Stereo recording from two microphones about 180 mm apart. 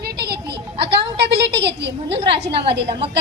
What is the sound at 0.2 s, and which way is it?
Music, 65° right (ahead or behind).